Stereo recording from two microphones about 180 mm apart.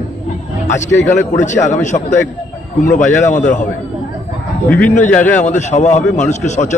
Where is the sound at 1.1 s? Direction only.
40° left (ahead or behind).